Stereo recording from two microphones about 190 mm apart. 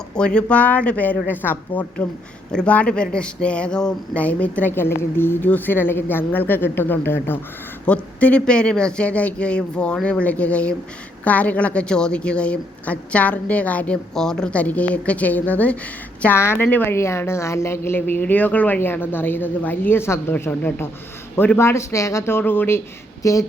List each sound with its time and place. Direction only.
0.2 s speech: 5° left (ahead or behind)